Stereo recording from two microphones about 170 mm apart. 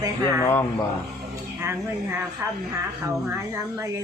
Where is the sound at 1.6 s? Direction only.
15° right (ahead or behind).